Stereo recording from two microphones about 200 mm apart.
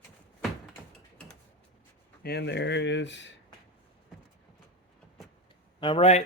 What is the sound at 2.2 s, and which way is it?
Speech, 55° left (ahead or behind).